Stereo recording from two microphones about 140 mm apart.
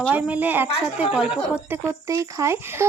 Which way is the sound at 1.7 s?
20° right (ahead or behind).